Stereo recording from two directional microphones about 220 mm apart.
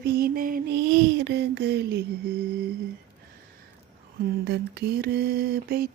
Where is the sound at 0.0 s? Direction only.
45° right (ahead or behind).